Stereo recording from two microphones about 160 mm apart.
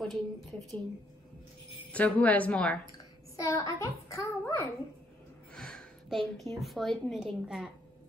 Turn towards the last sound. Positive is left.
turn(degrees=-5)  # may be behind; listen again after turning